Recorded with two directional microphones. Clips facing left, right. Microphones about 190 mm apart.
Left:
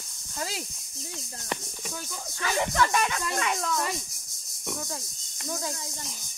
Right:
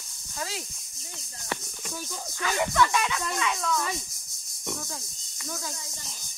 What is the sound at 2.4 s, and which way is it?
Speech, 40° left (ahead or behind).